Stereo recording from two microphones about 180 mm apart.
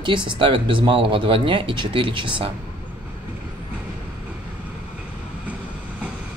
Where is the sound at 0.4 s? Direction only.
30° right (ahead or behind).